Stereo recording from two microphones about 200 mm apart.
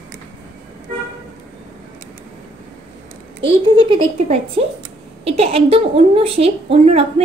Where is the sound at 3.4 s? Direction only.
25° right (ahead or behind).